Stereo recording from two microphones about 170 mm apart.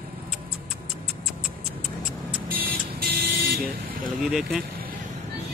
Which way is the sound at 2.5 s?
55° right (ahead or behind).